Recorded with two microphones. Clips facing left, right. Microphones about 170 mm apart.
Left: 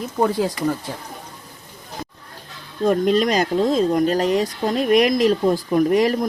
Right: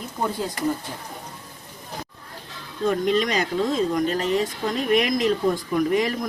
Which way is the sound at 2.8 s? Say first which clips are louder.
Left 4 dB; 40° left (ahead or behind).